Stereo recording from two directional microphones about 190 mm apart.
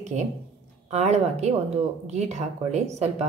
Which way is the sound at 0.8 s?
35° right (ahead or behind).